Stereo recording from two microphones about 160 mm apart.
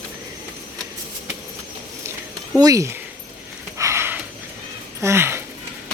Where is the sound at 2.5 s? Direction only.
20° right (ahead or behind).